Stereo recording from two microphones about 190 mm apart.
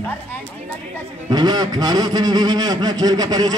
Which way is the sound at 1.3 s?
20° right (ahead or behind).